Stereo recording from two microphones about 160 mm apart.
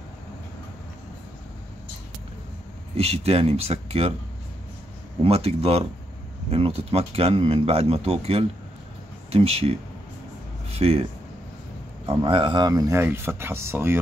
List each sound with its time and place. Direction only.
3.0 s speech: 40° right (ahead or behind)
5.2 s speech: 40° right (ahead or behind)
12.2 s speech: 30° right (ahead or behind); by 13.9 s 15° right (ahead or behind)